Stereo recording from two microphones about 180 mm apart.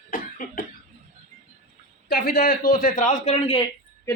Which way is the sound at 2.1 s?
55° left (ahead or behind).